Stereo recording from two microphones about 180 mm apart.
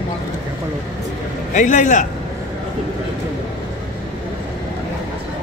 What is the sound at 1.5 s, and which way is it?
Speech, 45° left (ahead or behind).